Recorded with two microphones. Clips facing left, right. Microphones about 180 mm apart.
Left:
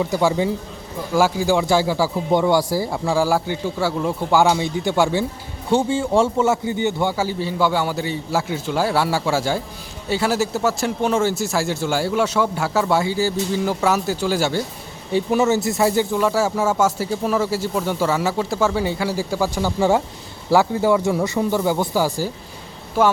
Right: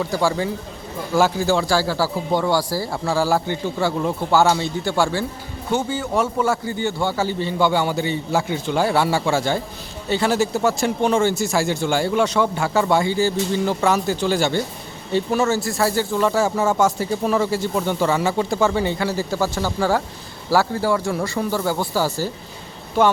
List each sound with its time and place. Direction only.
0.0 s a man's voice: 20° left (ahead or behind)
15.1 s speech: 15° left (ahead or behind)
16.2 s a man's voice: 5° left (ahead or behind)